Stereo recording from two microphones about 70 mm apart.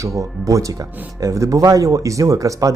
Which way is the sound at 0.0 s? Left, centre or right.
Right.